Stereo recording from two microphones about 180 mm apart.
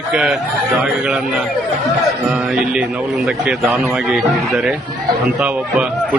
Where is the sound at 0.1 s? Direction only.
Centre (ahead or behind).